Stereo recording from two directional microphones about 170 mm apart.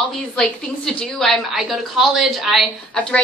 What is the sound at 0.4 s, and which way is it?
A woman's voice, 5° left (ahead or behind).